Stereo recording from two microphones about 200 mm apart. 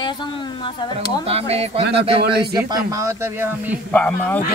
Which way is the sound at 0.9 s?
30° right (ahead or behind).